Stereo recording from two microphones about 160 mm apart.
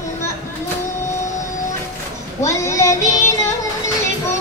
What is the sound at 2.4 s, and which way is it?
Child singing, 20° left (ahead or behind).